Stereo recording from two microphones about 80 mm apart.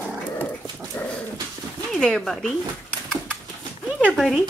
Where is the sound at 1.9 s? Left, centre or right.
Centre.